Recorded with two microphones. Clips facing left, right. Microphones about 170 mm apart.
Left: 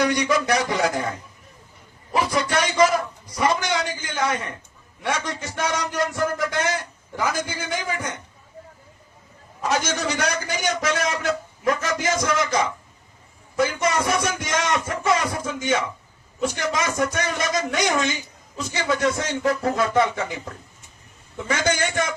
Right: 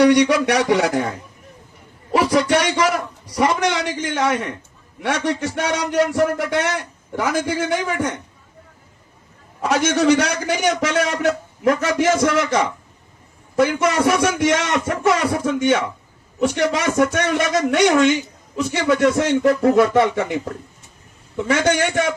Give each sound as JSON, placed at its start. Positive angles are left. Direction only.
{"t": 0.0, "sound": "a man's voice", "side_deg": -70}
{"t": 2.1, "sound": "a man's voice", "side_deg": -80}
{"t": 9.6, "sound": "a man's voice", "side_deg": -65}